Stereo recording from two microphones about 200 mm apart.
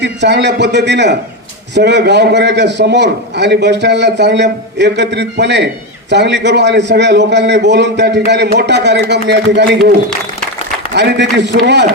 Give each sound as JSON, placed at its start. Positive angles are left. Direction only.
{"t": 0.0, "sound": "a man's voice", "side_deg": -60}
{"t": 10.9, "sound": "a man's voice", "side_deg": -60}